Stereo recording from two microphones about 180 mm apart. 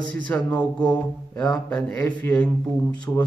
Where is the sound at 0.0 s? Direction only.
5° left (ahead or behind).